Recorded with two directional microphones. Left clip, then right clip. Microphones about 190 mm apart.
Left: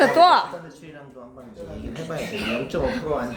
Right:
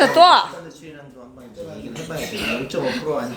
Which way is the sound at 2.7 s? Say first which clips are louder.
Right 1 dB; 45° left (ahead or behind).